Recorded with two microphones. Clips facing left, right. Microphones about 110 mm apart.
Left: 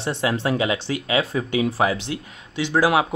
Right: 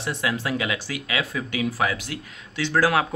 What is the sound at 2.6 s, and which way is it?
Speech, 15° left (ahead or behind).